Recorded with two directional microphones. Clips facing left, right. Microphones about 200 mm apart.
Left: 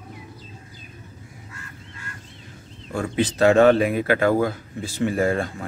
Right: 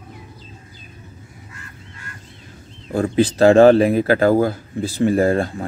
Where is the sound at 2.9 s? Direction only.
35° right (ahead or behind).